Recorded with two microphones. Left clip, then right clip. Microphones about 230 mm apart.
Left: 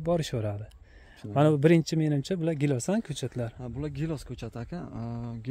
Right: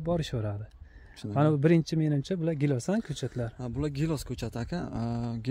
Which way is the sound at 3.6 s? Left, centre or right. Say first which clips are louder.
Right 3 dB; right.